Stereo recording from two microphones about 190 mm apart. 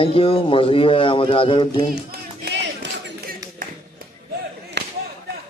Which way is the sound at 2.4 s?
65° right (ahead or behind).